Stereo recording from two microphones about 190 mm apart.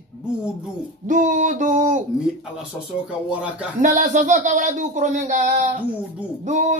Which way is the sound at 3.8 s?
40° right (ahead or behind).